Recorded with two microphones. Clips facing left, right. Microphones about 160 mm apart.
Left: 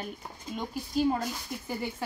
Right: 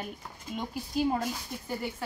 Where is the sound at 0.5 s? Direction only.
5° right (ahead or behind).